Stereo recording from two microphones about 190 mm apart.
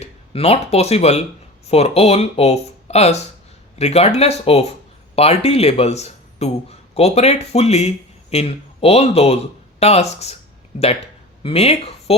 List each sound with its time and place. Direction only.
0.0 s speech: 30° left (ahead or behind)
11.4 s speech: 30° left (ahead or behind)